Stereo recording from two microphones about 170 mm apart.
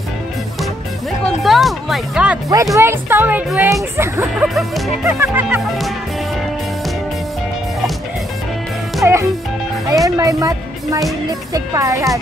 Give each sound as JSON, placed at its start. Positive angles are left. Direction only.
{"t": 1.2, "sound": "speech", "side_deg": 0}
{"t": 2.5, "sound": "speech", "side_deg": -20}
{"t": 4.6, "sound": "music", "side_deg": 0}
{"t": 5.0, "sound": "speech", "side_deg": -10}
{"t": 9.0, "sound": "speech", "side_deg": -15}
{"t": 9.8, "sound": "music", "side_deg": -20}
{"t": 11.2, "sound": "speech", "side_deg": -20}